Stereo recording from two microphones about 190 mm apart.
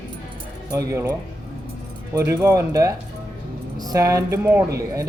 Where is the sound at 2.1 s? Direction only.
15° right (ahead or behind).